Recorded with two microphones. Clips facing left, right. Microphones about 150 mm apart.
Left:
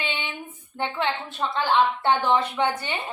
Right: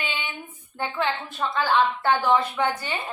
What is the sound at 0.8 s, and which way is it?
A woman's voice, 20° left (ahead or behind).